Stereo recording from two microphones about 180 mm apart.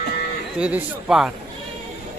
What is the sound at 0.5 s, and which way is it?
Speech, 5° right (ahead or behind).